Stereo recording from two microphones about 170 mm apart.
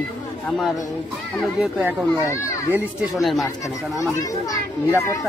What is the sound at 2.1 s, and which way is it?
Speech, 15° left (ahead or behind).